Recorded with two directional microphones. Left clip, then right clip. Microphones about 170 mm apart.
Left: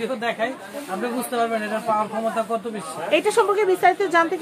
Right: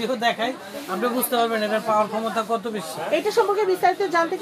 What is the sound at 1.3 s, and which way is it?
Speech, 50° right (ahead or behind).